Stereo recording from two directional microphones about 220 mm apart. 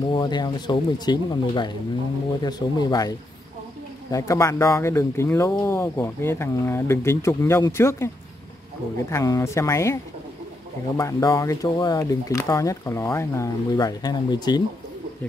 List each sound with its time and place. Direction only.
0.1 s speech: 20° left (ahead or behind)
9.1 s speech: 15° left (ahead or behind)
11.0 s speech: 15° left (ahead or behind)